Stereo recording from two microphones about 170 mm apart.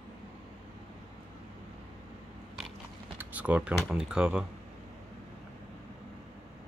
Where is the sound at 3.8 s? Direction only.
5° right (ahead or behind).